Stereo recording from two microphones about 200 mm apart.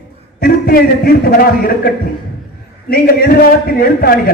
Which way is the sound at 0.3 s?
50° left (ahead or behind).